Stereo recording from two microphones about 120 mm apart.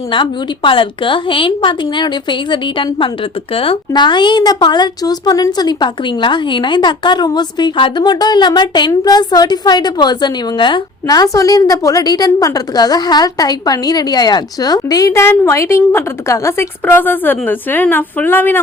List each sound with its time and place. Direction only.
0.1 s a woman's voice: 45° left (ahead or behind); by 18.6 s 15° left (ahead or behind)